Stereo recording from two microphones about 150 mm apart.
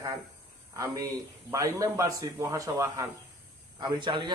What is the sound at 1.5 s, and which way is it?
Speech, 20° right (ahead or behind).